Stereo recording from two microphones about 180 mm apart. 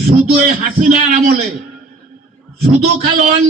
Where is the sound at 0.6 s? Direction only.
50° right (ahead or behind).